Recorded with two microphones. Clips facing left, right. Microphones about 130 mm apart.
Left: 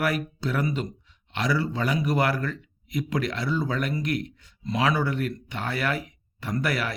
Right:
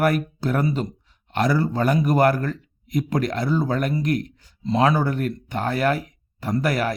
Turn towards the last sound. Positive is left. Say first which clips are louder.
# right 5 dB
turn(degrees=-40)  # may be behind; listen again after turning